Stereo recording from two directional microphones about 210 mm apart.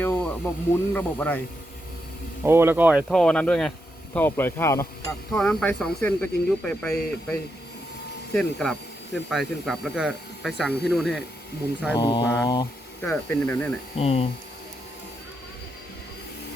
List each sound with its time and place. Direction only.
0.0 s speech: 10° left (ahead or behind)
2.4 s speech: 10° right (ahead or behind); by 5.1 s 15° left (ahead or behind)
5.3 s speech: 5° left (ahead or behind)
8.3 s speech: 5° left (ahead or behind)
11.9 s speech: 20° left (ahead or behind)
13.0 s speech: 5° left (ahead or behind)
13.9 s speech: 30° left (ahead or behind)